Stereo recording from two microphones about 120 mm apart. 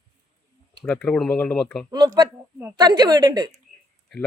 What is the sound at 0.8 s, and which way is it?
Speech, 10° left (ahead or behind).